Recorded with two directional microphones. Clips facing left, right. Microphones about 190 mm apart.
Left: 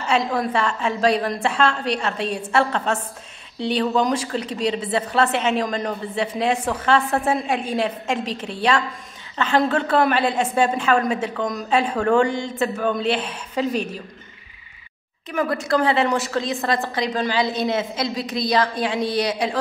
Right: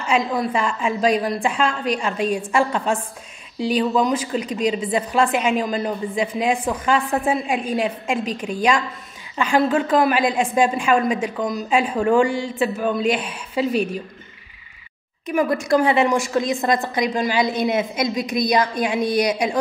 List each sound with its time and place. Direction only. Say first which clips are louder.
0.0 s a woman's voice: right 1 dB; 10° right (ahead or behind)
9.4 s a woman's voice: right 1 dB; 10° right (ahead or behind)
15.2 s a woman's voice: right 3 dB; 15° right (ahead or behind)